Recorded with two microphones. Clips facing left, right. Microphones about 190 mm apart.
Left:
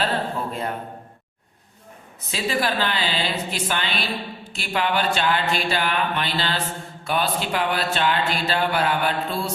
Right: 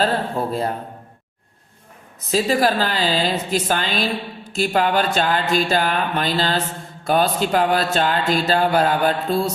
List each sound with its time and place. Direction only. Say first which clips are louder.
0.0 s a woman's voice: right 4 dB; 35° right (ahead or behind)
2.3 s a woman's voice: right 6 dB; 40° right (ahead or behind)